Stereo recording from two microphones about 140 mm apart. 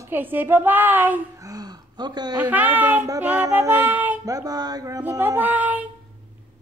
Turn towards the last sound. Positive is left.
turn(degrees=-10)  # may be behind; listen again after turning